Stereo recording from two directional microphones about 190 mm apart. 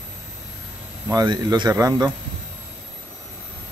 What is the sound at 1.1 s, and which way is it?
Speech, 20° right (ahead or behind).